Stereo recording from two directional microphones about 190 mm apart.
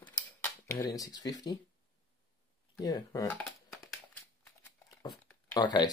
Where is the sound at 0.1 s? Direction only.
10° left (ahead or behind).